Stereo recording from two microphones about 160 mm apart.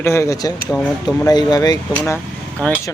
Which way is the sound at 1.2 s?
25° left (ahead or behind).